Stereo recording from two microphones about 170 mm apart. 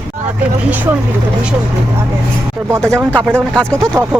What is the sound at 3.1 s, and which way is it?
Speech, 5° left (ahead or behind).